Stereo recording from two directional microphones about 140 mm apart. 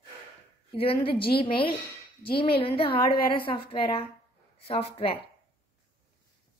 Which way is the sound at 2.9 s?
90° left.